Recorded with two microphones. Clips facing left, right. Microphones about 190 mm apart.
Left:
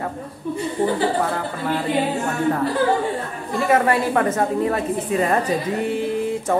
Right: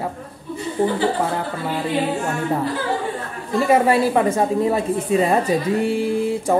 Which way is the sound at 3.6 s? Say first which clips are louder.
Right 2 dB; 15° right (ahead or behind).